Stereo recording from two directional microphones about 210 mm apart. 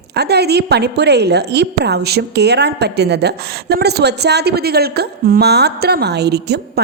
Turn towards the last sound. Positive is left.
turn(degrees=-50)  # may be behind; listen again after turning